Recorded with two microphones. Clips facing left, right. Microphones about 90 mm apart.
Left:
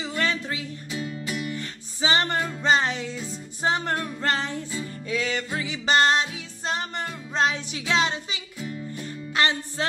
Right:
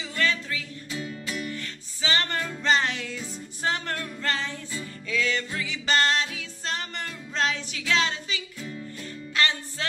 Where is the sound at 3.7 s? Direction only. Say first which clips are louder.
Left 5 dB; 25° left (ahead or behind).